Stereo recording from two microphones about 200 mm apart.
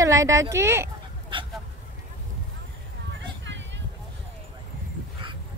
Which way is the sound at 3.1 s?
65° right (ahead or behind).